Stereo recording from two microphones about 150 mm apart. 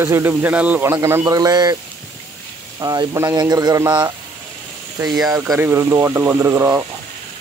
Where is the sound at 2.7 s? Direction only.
25° right (ahead or behind).